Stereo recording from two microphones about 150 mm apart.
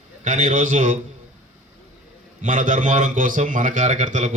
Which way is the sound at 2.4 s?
55° right (ahead or behind).